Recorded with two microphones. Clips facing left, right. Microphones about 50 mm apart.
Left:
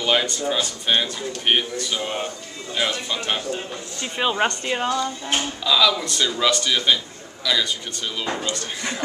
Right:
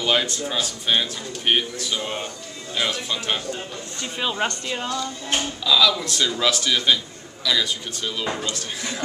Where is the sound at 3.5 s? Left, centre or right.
Left.